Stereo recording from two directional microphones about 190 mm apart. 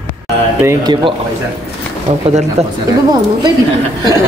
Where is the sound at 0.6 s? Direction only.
20° right (ahead or behind).